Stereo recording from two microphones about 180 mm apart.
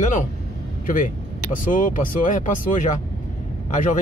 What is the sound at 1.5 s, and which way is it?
Speech, 50° left (ahead or behind).